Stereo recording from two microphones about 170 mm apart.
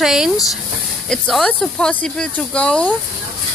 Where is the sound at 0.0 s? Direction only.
Centre (ahead or behind).